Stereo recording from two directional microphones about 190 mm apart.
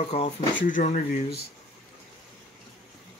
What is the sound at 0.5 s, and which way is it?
Speech, 45° left (ahead or behind).